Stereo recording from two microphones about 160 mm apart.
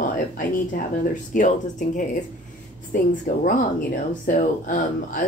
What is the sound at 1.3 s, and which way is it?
A woman's voice, 55° left (ahead or behind).